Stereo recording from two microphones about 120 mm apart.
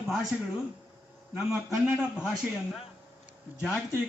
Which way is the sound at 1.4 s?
5° right (ahead or behind).